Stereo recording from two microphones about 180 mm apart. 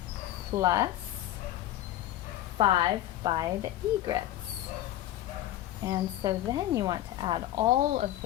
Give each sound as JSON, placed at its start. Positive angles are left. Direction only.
{"t": 0.5, "sound": "a woman's voice", "side_deg": -20}
{"t": 2.6, "sound": "a woman's voice", "side_deg": -30}
{"t": 5.8, "sound": "a woman's voice", "side_deg": -20}